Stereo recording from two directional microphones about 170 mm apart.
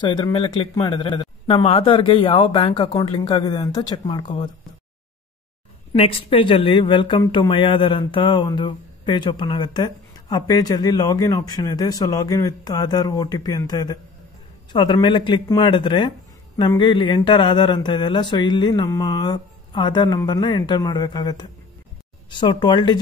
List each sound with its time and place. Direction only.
0.1 s speech: 25° left (ahead or behind)
5.9 s speech: 35° left (ahead or behind)